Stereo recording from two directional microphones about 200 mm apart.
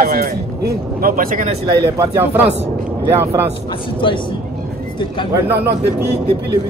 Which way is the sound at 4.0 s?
25° left (ahead or behind).